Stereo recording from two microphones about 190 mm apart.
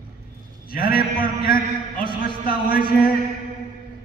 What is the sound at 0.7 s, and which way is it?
A man's voice, 50° left (ahead or behind).